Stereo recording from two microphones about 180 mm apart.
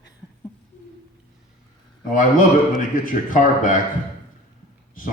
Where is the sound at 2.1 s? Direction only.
45° left (ahead or behind).